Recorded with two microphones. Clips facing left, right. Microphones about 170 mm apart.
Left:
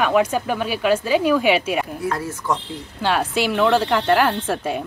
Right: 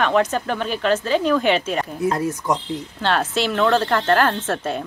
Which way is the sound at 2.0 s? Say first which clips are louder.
Right 3 dB; 20° right (ahead or behind).